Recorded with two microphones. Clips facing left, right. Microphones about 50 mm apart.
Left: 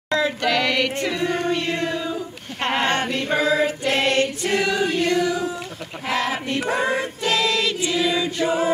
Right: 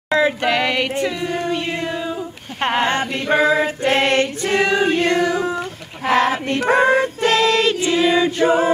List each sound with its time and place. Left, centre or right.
0.1 s a sound: right
1.5 s child singing: centre
3.1 s choir: right